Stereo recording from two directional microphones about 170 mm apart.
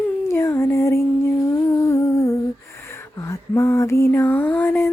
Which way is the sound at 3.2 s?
15° left (ahead or behind).